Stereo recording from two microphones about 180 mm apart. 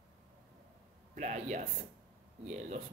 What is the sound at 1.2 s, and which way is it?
Speech, 40° right (ahead or behind).